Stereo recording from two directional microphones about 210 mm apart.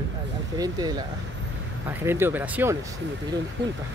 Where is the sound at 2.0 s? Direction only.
10° right (ahead or behind).